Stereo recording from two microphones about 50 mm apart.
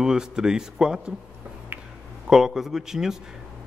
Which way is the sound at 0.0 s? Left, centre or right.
Centre.